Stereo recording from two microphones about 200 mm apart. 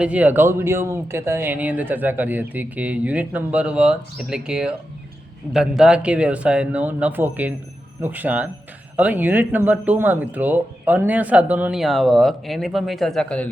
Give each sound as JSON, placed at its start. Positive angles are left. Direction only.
{"t": 0.0, "sound": "speech", "side_deg": -5}